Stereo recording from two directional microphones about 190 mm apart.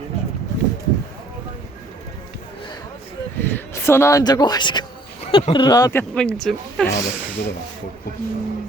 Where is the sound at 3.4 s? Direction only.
10° left (ahead or behind).